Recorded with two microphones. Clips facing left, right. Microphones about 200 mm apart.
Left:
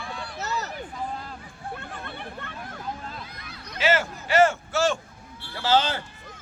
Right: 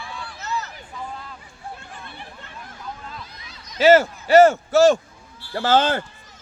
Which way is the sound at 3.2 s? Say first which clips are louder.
Even; 55° left (ahead or behind).